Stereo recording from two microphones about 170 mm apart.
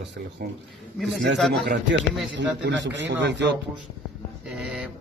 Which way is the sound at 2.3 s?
90° right.